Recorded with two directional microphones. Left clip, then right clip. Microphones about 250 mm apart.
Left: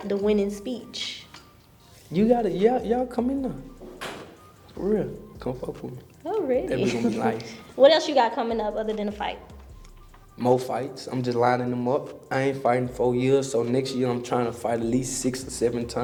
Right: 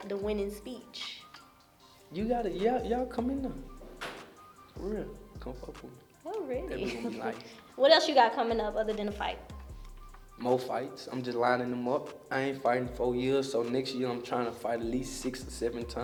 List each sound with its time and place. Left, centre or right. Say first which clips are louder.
0.1 s speech: left 10 dB; centre
2.0 s speech: left 10 dB; left
4.9 s speech: left 12 dB; left
6.2 s a sound: left 10 dB; centre
6.7 s speech: left 11 dB; centre
7.1 s speech: left 11 dB; left
7.5 s a woman's voice: left 6 dB; centre
10.4 s speech: left 7 dB; left